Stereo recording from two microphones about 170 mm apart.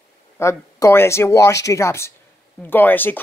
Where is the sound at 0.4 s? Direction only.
15° left (ahead or behind).